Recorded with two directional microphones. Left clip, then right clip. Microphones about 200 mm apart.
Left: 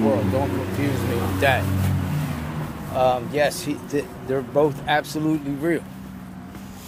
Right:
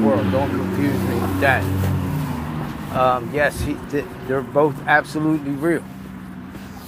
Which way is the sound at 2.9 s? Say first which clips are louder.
Right 2 dB; 10° left (ahead or behind).